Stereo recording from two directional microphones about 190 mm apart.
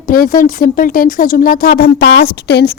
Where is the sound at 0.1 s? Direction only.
45° left (ahead or behind).